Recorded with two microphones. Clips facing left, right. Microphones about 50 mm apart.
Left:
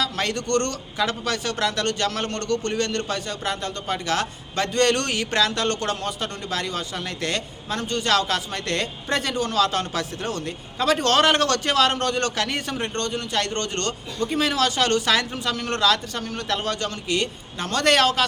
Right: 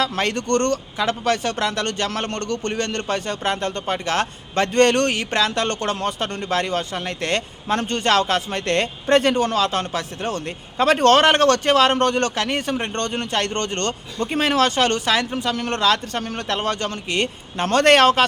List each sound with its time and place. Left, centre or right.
0.0 s a man's voice: right
9.6 s a man's voice: right
12.9 s a man's voice: right
15.1 s a woman's voice: centre
15.4 s a man's voice: right